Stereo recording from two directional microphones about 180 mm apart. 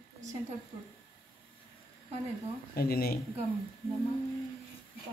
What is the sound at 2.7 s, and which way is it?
Speech, 60° left (ahead or behind).